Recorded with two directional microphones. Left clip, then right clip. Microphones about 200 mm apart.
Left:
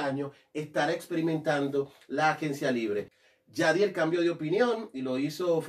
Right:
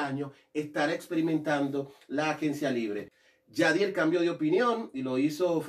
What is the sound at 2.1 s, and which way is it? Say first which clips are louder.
A man's voice: left 2 dB; 20° left (ahead or behind).